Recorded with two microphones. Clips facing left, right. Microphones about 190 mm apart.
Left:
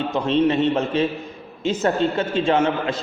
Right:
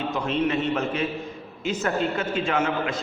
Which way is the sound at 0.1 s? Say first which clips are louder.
Left 7 dB; 30° left (ahead or behind).